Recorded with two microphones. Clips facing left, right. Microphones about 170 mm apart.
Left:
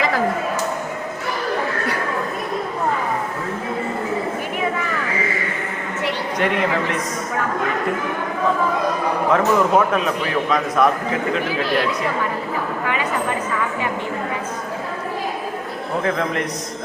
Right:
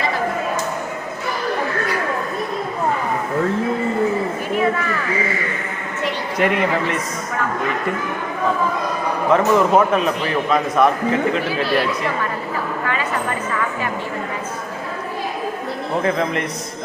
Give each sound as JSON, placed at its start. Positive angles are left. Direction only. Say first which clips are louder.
{"t": 6.4, "sound": "a man's voice", "louder": "right 2 dB", "side_deg": 0}
{"t": 9.3, "sound": "a man's voice", "louder": "right 2 dB", "side_deg": 0}
{"t": 11.4, "sound": "speech", "louder": "right 1 dB", "side_deg": 15}
{"t": 16.0, "sound": "a man's voice", "louder": "right 1 dB", "side_deg": 0}